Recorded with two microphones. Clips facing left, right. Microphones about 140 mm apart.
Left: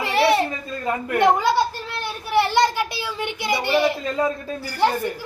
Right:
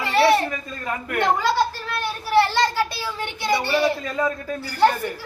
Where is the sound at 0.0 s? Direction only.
20° left (ahead or behind).